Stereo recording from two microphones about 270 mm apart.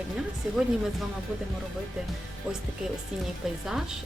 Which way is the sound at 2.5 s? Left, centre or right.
Centre.